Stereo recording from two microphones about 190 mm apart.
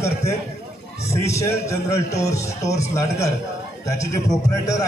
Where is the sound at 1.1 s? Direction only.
15° left (ahead or behind).